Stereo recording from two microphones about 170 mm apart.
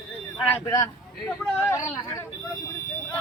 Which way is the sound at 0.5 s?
20° left (ahead or behind).